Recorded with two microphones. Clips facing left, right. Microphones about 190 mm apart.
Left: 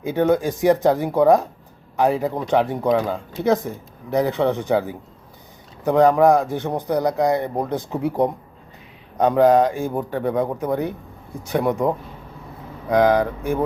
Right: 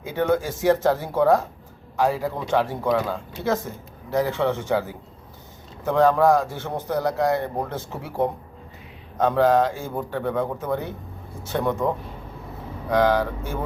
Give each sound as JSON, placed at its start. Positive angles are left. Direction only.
{"t": 0.0, "sound": "speech", "side_deg": 15}
{"t": 13.0, "sound": "speech", "side_deg": 15}